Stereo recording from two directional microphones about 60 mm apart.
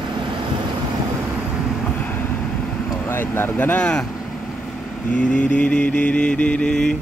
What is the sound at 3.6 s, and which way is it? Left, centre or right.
Mantra, left.